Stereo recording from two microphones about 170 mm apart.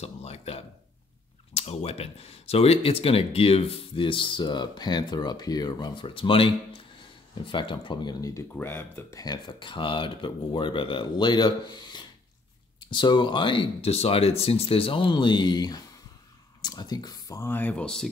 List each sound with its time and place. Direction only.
0.0 s speech: 35° left (ahead or behind); by 18.0 s 5° left (ahead or behind)